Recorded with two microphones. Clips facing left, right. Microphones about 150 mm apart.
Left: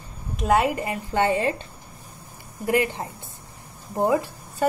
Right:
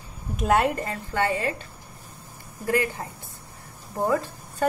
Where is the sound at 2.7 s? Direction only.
20° left (ahead or behind).